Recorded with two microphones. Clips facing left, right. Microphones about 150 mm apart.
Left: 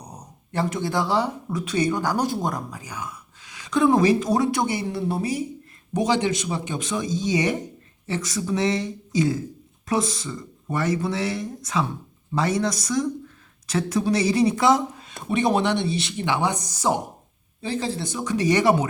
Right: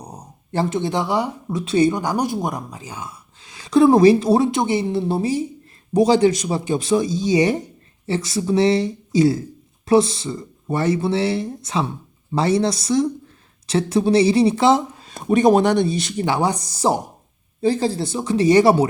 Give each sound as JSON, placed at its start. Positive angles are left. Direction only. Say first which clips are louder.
{"t": 0.0, "sound": "speech", "louder": "right 4 dB", "side_deg": -30}
{"t": 1.6, "sound": "speech", "louder": "right 7 dB", "side_deg": -30}
{"t": 2.0, "sound": "speech", "louder": "right 2 dB", "side_deg": -15}